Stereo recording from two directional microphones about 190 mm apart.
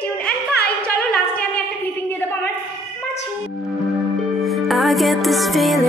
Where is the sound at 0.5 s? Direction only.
55° left (ahead or behind).